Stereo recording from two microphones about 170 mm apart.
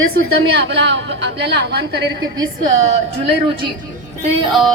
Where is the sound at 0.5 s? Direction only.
90° right.